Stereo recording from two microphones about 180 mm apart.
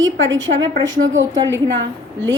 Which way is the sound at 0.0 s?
90° right.